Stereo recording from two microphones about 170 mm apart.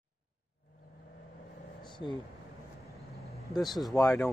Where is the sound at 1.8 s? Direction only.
30° left (ahead or behind).